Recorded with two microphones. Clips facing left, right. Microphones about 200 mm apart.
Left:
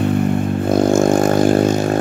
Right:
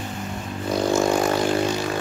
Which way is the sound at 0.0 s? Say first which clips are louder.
Left 15 dB; 60° left (ahead or behind).